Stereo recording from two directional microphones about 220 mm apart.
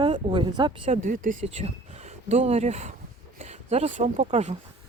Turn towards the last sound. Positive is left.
turn(degrees=-30)  # may be behind; listen again after turning